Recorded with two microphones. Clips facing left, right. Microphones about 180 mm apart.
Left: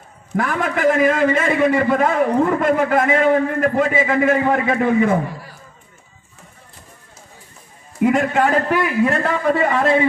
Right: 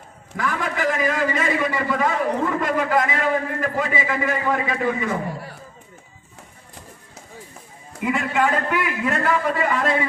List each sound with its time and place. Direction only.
0.4 s a man's voice: 50° left (ahead or behind)
8.0 s a man's voice: 50° left (ahead or behind); by 10.0 s 30° left (ahead or behind)